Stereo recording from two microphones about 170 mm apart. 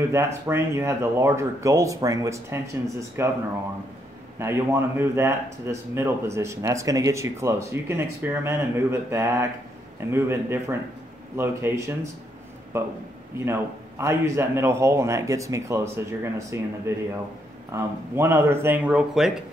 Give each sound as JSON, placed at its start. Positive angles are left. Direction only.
{"t": 0.1, "sound": "speech", "side_deg": -15}
{"t": 4.4, "sound": "speech", "side_deg": -15}